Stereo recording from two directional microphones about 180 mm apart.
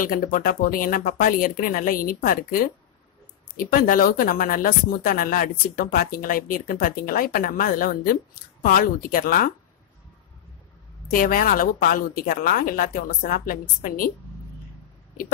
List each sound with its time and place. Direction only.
0.0 s speech: 50° left (ahead or behind)
11.1 s speech: 50° left (ahead or behind)